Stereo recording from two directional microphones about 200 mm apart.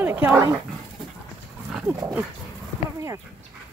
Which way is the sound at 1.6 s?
Centre (ahead or behind).